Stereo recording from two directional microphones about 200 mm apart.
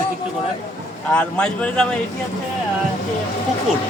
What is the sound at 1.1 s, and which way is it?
Speech, 5° left (ahead or behind).